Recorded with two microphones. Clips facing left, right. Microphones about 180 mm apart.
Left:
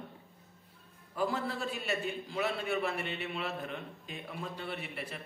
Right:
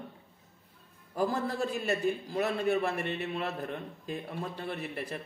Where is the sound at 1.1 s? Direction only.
45° right (ahead or behind).